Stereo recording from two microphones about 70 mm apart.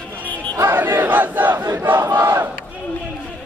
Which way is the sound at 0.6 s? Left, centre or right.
Right.